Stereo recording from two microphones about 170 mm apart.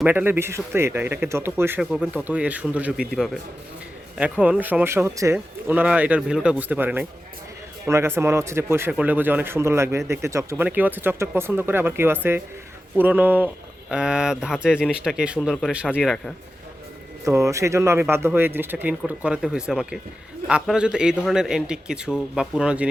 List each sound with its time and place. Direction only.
0.0 s speech: 10° right (ahead or behind)
4.2 s speech: 5° right (ahead or behind)
16.0 s speech: 5° left (ahead or behind)
17.2 s speech: 20° right (ahead or behind)